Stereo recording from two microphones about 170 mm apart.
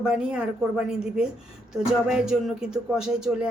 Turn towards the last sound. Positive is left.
turn(degrees=-5)  # may be behind; listen again after turning